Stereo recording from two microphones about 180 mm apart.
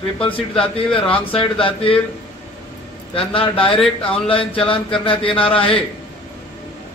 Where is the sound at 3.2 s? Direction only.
30° left (ahead or behind).